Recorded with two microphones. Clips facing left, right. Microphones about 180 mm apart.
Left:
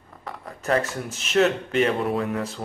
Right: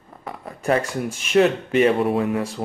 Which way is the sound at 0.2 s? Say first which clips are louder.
Right 3 dB; 15° right (ahead or behind).